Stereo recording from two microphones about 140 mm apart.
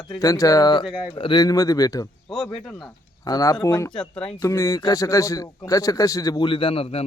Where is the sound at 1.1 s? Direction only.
35° left (ahead or behind).